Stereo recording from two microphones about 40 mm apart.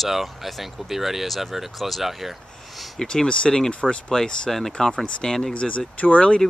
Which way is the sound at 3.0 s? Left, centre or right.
Centre.